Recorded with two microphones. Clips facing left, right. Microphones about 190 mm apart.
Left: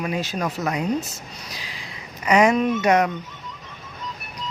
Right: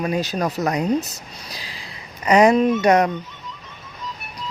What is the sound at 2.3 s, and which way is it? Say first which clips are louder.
Speech: right 3 dB; 35° right (ahead or behind).